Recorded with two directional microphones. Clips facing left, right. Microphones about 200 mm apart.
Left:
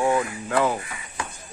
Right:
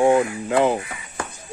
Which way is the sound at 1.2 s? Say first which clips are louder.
Right 3 dB; 50° right (ahead or behind).